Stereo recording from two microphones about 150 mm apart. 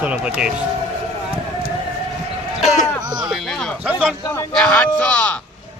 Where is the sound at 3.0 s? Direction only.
25° right (ahead or behind).